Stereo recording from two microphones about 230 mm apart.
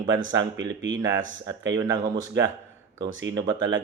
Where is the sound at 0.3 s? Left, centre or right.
Right.